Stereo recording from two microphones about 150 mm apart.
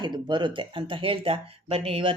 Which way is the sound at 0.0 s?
30° right (ahead or behind).